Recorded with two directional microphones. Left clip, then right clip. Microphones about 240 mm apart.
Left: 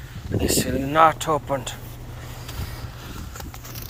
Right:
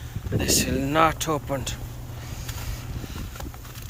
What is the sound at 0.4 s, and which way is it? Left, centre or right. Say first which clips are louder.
Speech: left 1 dB; centre.